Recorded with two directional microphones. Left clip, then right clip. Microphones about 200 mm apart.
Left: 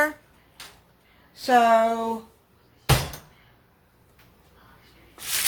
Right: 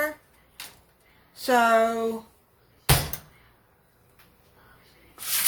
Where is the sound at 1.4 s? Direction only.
15° right (ahead or behind).